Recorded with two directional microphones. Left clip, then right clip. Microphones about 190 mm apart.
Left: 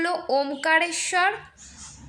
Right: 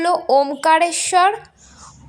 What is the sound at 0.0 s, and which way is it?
A woman's voice, 20° right (ahead or behind).